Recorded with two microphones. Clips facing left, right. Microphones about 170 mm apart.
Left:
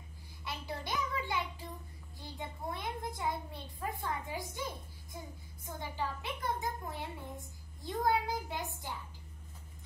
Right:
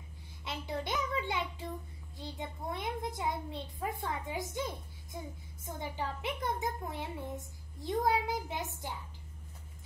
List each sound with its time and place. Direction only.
0.5 s child singing: 20° right (ahead or behind)
2.1 s a child's voice: 20° right (ahead or behind)